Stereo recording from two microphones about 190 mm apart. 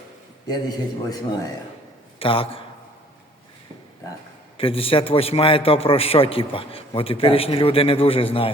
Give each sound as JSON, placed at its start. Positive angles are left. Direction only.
{"t": 0.4, "sound": "a man's voice", "side_deg": 20}
{"t": 4.5, "sound": "a man's voice", "side_deg": 30}